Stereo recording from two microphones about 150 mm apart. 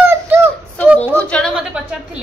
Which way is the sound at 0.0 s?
15° right (ahead or behind).